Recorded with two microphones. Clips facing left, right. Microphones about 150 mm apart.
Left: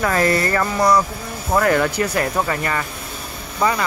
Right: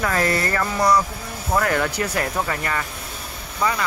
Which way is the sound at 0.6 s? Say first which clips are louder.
Even; 50° left (ahead or behind).